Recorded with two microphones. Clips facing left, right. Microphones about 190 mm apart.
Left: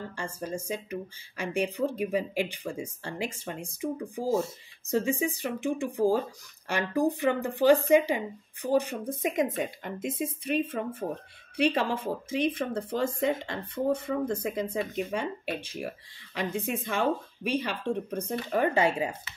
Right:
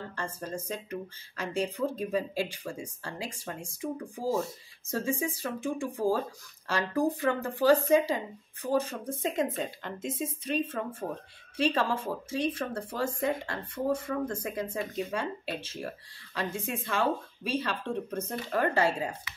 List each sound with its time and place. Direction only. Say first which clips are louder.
0.1 s speech: left 2 dB; 10° left (ahead or behind)